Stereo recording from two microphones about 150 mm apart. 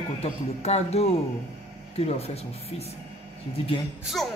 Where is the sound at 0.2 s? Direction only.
45° left (ahead or behind).